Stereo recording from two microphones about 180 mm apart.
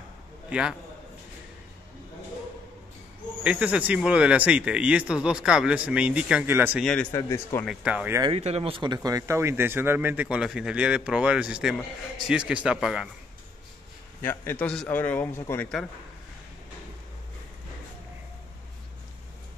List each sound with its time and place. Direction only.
0.5 s a man's voice: 5° right (ahead or behind)
3.4 s speech: 5° right (ahead or behind)
6.8 s a man's voice: 5° left (ahead or behind)
7.1 s a man's voice: 15° left (ahead or behind)
7.6 s speech: 5° right (ahead or behind)
8.2 s a man's voice: 30° right (ahead or behind); by 13.1 s 5° right (ahead or behind)
14.2 s a man's voice: 10° left (ahead or behind)